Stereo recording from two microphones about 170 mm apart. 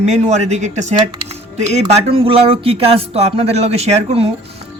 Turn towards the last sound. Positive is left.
turn(degrees=-35)  # may be behind; listen again after turning